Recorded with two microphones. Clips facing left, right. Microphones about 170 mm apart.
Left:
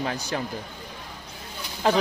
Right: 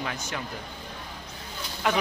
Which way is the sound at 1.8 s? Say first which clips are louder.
Left 4 dB; 30° left (ahead or behind).